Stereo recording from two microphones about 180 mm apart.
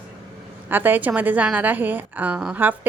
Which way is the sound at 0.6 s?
10° right (ahead or behind).